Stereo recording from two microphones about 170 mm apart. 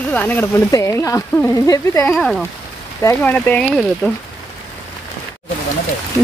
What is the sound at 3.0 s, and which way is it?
Speech, 15° left (ahead or behind).